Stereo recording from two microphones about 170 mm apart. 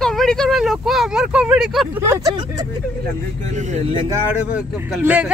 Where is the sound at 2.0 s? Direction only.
20° right (ahead or behind).